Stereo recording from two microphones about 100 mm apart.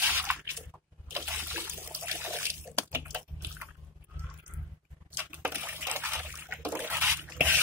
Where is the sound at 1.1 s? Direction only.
20° right (ahead or behind).